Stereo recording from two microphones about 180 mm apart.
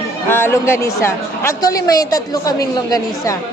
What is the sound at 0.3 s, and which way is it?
Speech, 10° left (ahead or behind).